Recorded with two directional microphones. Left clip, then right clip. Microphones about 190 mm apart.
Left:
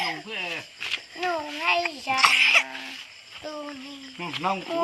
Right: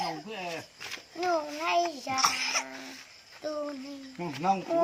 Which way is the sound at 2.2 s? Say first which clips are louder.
Left 11 dB; 5° right (ahead or behind).